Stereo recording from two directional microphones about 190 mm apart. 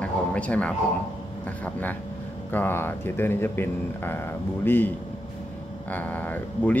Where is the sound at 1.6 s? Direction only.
10° left (ahead or behind).